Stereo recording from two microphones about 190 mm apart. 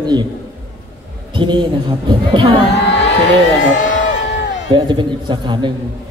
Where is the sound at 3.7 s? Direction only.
40° left (ahead or behind).